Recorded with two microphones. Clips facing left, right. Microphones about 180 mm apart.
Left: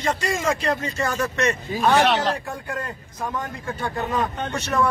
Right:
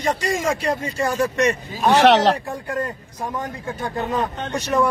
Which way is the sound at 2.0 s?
80° right.